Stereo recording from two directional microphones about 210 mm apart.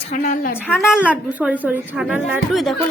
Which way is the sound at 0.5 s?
10° left (ahead or behind).